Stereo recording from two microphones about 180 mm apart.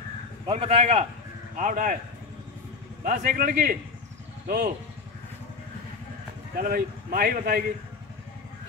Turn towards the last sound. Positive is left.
turn(degrees=-55)  # may be behind; listen again after turning